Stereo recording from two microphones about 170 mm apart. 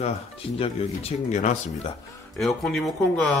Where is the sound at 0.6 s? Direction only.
35° left (ahead or behind).